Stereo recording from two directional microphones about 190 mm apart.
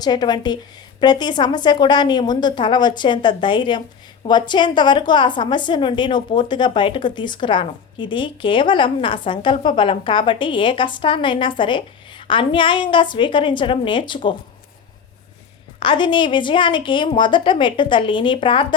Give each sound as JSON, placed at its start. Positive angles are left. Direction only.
{"t": 0.0, "sound": "a woman's voice", "side_deg": 20}
{"t": 15.8, "sound": "a woman's voice", "side_deg": 25}